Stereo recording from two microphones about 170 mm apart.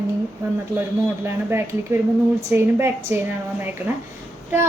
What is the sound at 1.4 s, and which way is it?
Speech, 15° right (ahead or behind).